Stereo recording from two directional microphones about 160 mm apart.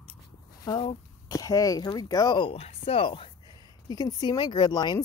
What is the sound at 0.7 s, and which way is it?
A woman's voice, 30° left (ahead or behind).